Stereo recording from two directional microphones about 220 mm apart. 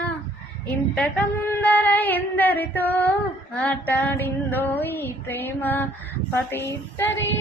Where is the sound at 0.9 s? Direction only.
5° left (ahead or behind).